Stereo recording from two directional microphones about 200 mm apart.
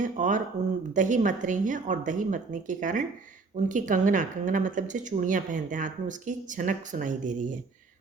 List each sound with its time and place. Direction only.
0.0 s speech: 40° right (ahead or behind)